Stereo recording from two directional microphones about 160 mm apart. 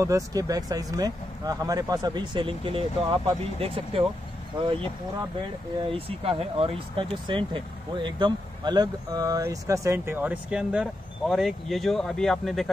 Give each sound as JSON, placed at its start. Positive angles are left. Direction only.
{"t": 0.0, "sound": "speech", "side_deg": -20}
{"t": 5.9, "sound": "speech", "side_deg": -35}